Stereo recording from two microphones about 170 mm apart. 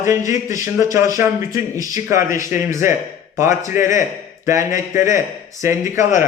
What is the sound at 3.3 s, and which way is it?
Speech, 20° right (ahead or behind).